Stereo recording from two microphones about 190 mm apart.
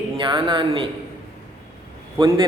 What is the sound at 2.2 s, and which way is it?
Speech, 25° right (ahead or behind).